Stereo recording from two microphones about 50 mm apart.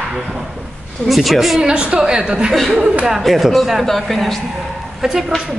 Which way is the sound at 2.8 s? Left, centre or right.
Right.